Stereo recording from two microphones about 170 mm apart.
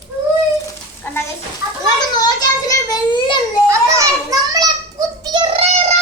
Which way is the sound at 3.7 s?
20° right (ahead or behind).